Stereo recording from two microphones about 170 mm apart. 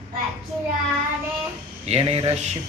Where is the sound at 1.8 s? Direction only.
35° right (ahead or behind).